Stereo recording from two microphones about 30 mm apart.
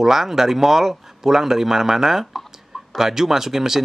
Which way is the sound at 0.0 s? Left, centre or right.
Centre.